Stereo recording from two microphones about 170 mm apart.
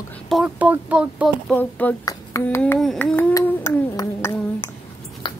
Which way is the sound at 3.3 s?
15° left (ahead or behind).